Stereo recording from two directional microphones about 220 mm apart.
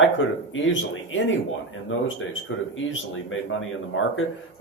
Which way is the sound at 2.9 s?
65° left (ahead or behind).